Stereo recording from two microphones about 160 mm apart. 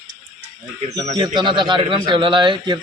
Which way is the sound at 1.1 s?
30° right (ahead or behind).